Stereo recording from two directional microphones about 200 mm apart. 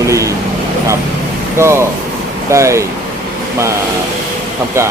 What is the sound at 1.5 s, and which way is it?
Speech, 15° right (ahead or behind).